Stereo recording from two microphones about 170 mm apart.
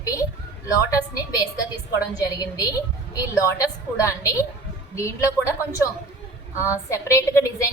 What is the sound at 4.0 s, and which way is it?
Speech, 20° left (ahead or behind).